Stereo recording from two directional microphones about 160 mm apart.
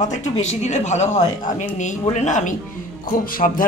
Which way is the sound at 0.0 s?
45° left (ahead or behind).